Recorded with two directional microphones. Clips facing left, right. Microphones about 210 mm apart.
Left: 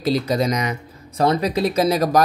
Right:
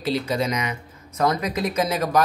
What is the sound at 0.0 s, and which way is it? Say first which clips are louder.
Speech: left 4 dB; 40° left (ahead or behind).